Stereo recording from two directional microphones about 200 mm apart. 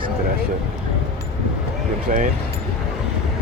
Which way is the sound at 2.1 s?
40° right (ahead or behind).